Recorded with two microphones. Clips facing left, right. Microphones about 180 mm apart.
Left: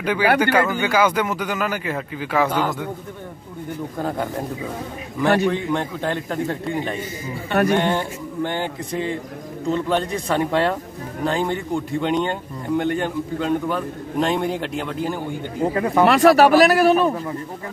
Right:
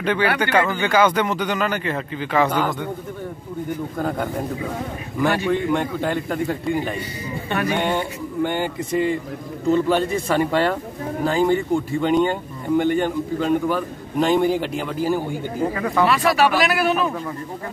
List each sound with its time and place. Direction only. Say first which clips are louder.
0.0 s speech: left 2 dB; 10° left (ahead or behind)
5.5 s speech: right 2 dB; 5° right (ahead or behind)
15.6 s speech: left 2 dB; 15° left (ahead or behind)
16.1 s speech: left 8 dB; 45° left (ahead or behind)